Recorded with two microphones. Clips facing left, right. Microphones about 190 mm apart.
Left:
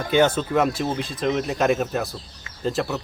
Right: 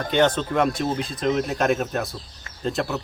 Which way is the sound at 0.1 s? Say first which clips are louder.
Left 2 dB; 10° left (ahead or behind).